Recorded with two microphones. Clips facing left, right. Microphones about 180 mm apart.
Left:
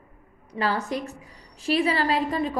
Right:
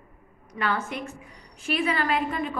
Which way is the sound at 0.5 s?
35° left (ahead or behind).